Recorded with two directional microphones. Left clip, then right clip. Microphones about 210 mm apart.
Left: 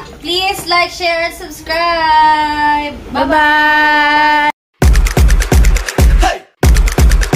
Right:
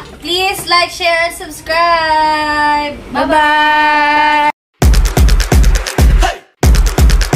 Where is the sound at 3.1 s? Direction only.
Centre (ahead or behind).